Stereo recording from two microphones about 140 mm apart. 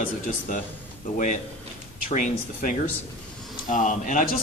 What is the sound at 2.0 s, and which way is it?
A man's voice, 65° left (ahead or behind).